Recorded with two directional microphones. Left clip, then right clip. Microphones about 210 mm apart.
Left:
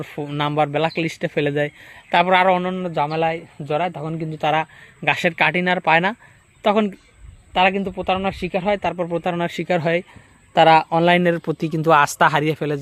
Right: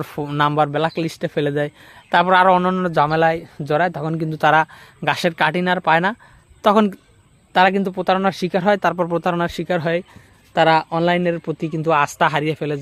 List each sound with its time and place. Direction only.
0.0 s speech: 20° right (ahead or behind)
2.6 s a woman's voice: 35° right (ahead or behind); by 9.5 s 15° right (ahead or behind)
9.6 s speech: centre (ahead or behind)